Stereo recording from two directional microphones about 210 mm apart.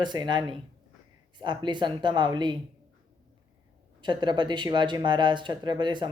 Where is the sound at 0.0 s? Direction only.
20° right (ahead or behind).